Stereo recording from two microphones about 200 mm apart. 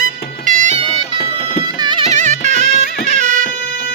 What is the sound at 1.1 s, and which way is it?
Music, 45° left (ahead or behind).